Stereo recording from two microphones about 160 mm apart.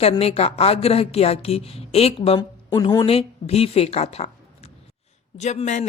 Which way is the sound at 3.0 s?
40° left (ahead or behind).